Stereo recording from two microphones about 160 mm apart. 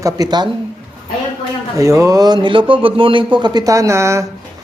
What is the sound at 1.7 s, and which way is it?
A man's voice, 20° right (ahead or behind).